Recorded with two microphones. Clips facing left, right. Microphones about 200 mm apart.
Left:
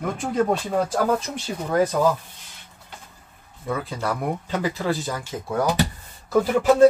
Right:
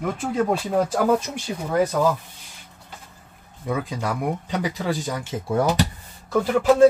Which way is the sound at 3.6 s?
15° right (ahead or behind).